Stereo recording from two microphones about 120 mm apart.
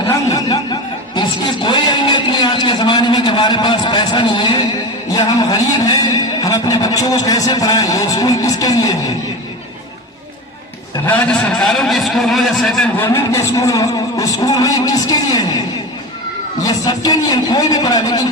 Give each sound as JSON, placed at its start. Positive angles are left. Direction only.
{"t": 0.3, "sound": "snicker", "side_deg": 30}
{"t": 1.6, "sound": "vehicle", "side_deg": 40}
{"t": 5.1, "sound": "a man's voice", "side_deg": 30}
{"t": 11.0, "sound": "a man's voice", "side_deg": 10}
{"t": 13.0, "sound": "a man's voice", "side_deg": 20}
{"t": 16.6, "sound": "a man's voice", "side_deg": 30}